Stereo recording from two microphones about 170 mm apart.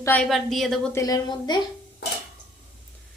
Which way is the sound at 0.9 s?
20° left (ahead or behind).